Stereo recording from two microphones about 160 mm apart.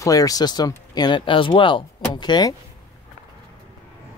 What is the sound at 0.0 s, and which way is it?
Speech, 20° left (ahead or behind).